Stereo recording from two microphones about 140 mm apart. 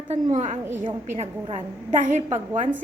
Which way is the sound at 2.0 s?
60° right (ahead or behind).